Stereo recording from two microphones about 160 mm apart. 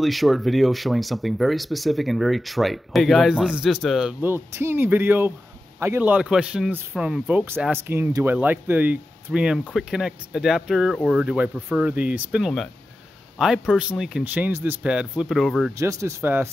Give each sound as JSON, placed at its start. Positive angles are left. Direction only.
{"t": 0.0, "sound": "speech", "side_deg": 0}
{"t": 4.2, "sound": "a man's voice", "side_deg": -15}
{"t": 7.5, "sound": "speech", "side_deg": 5}
{"t": 7.8, "sound": "a man's voice", "side_deg": -15}
{"t": 15.7, "sound": "a man's voice", "side_deg": -20}